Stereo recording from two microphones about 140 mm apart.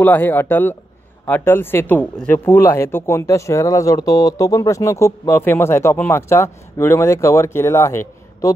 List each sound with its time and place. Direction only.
0.0 s speech: 15° left (ahead or behind)